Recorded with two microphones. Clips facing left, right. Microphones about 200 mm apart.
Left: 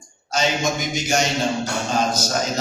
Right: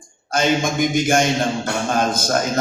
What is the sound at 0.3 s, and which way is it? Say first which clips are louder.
A man's voice: right 3 dB; 55° right (ahead or behind).